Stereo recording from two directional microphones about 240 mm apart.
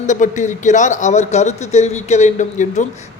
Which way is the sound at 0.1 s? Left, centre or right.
Left.